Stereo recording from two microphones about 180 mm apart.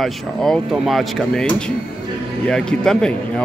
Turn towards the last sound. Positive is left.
turn(degrees=5)  # may be behind; listen again after turning